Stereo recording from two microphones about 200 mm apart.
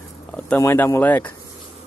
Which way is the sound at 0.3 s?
10° left (ahead or behind).